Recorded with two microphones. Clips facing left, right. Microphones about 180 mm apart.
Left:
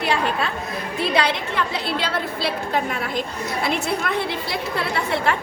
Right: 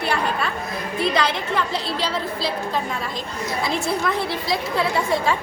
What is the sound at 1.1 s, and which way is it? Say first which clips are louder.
Speech: even; 60° left (ahead or behind).